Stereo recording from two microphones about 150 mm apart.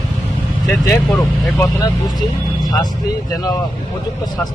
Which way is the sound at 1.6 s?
25° left (ahead or behind).